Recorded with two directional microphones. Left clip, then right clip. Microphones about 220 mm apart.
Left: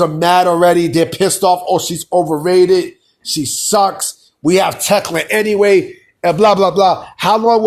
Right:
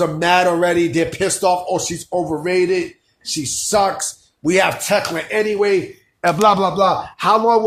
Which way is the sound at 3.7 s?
20° left (ahead or behind).